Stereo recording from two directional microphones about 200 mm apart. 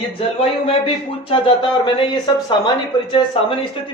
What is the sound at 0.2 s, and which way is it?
Speech, 30° left (ahead or behind).